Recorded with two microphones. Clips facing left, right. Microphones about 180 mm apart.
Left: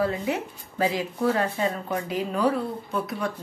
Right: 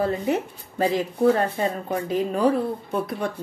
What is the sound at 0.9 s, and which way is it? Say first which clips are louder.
Speech: right 5 dB; 50° right (ahead or behind).